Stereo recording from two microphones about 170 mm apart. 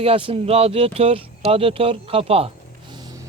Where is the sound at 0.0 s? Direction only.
35° right (ahead or behind).